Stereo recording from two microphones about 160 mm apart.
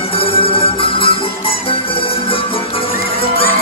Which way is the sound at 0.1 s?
35° left (ahead or behind).